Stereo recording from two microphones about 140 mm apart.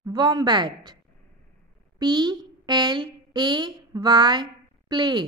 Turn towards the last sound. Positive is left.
turn(degrees=-30)  # may be behind; listen again after turning